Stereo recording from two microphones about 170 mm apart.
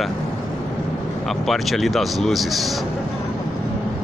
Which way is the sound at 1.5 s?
Centre (ahead or behind).